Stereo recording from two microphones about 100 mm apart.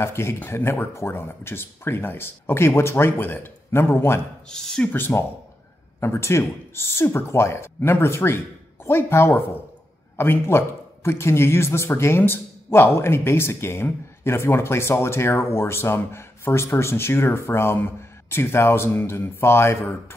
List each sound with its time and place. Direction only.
0.0 s speech: 25° left (ahead or behind)
4.5 s speech: 5° left (ahead or behind)
4.9 s speech: 20° left (ahead or behind)